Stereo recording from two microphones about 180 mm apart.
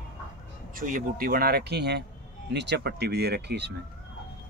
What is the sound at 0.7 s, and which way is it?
Speech, 50° right (ahead or behind).